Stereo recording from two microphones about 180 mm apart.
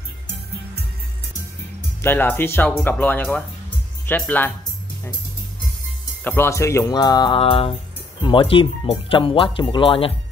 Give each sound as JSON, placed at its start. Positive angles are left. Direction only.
{"t": 2.0, "sound": "speech", "side_deg": 10}
{"t": 6.2, "sound": "speech", "side_deg": 15}